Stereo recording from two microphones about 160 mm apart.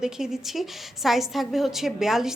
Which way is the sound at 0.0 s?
5° right (ahead or behind).